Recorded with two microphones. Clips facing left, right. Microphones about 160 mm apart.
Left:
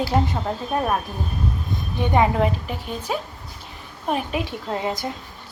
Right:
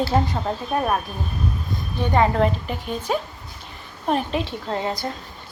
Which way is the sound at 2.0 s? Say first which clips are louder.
Even; 15° left (ahead or behind).